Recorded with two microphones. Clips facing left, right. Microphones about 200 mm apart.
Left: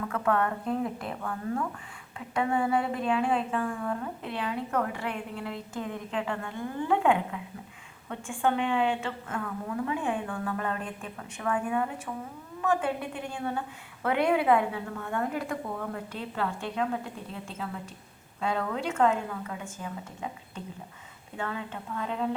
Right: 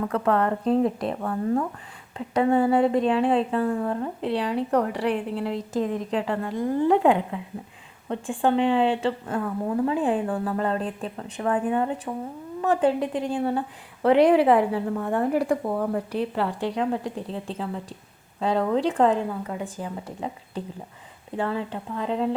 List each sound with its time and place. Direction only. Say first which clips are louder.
0.0 s speech: right 5 dB; 35° right (ahead or behind)
21.3 s speech: right 8 dB; 35° right (ahead or behind)